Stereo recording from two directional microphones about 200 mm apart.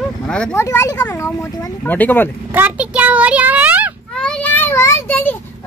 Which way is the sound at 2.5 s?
10° right (ahead or behind).